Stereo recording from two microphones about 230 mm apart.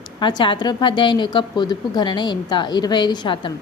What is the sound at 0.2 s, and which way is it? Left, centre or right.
A woman's voice, left.